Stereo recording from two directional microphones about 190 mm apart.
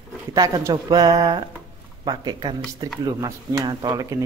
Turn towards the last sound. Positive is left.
turn(degrees=-20)  # may be behind; listen again after turning